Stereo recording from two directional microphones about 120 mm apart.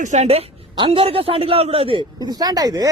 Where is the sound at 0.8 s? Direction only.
50° right (ahead or behind).